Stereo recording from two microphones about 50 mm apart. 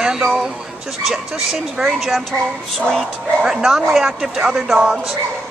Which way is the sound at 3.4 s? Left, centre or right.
Centre.